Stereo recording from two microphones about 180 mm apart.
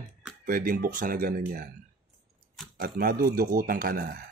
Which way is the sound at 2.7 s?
55° right (ahead or behind).